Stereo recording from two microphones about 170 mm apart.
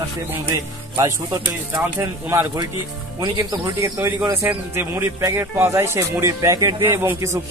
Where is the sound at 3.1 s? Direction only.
25° right (ahead or behind).